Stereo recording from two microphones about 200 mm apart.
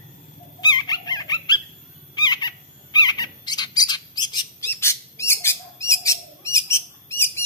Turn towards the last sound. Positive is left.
turn(degrees=10)  # may be behind; listen again after turning